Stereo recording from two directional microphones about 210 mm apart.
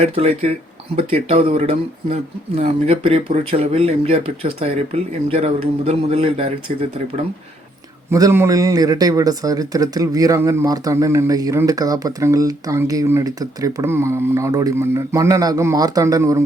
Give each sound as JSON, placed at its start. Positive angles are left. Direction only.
{"t": 0.0, "sound": "a man's voice", "side_deg": -30}
{"t": 8.1, "sound": "a man's voice", "side_deg": -15}